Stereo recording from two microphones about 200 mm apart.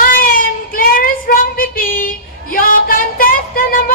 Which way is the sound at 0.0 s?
45° left (ahead or behind).